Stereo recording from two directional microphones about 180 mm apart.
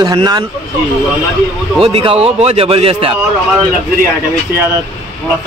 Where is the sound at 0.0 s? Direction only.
25° right (ahead or behind).